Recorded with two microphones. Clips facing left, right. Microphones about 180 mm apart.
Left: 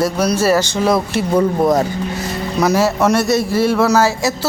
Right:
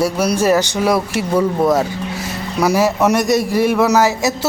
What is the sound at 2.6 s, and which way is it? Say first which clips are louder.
A man's voice: even; 10° right (ahead or behind).